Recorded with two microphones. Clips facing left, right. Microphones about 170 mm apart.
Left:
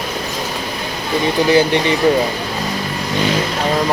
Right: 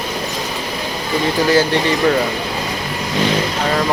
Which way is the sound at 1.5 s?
15° left (ahead or behind).